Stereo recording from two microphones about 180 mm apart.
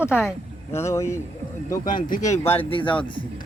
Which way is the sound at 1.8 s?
45° left (ahead or behind).